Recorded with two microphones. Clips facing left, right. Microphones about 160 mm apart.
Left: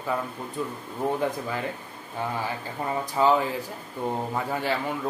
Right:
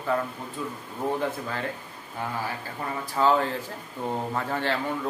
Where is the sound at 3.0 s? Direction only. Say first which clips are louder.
Even; 15° left (ahead or behind).